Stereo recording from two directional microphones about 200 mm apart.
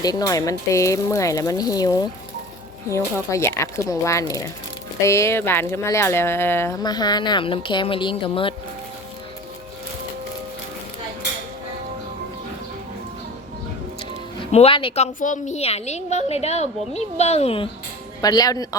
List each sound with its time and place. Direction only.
0.0 s speech: 20° left (ahead or behind)
14.5 s a woman's voice: 30° left (ahead or behind)
18.2 s speech: 20° left (ahead or behind)